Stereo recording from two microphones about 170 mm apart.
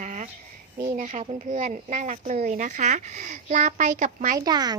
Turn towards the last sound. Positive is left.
turn(degrees=-25)  # may be behind; listen again after turning